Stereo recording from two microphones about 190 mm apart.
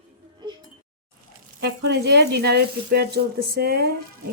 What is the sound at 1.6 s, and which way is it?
Speech, 60° right (ahead or behind).